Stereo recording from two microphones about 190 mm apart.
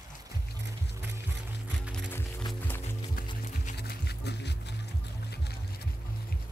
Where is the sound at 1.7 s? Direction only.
Centre (ahead or behind).